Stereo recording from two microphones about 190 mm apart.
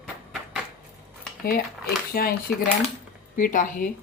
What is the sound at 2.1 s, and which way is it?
Speech, 50° left (ahead or behind).